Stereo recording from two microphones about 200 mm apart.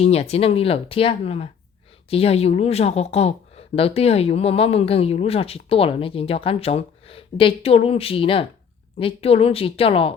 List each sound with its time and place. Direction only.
0.0 s speech: 30° left (ahead or behind)